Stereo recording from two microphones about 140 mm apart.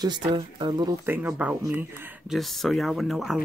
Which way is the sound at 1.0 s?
15° right (ahead or behind).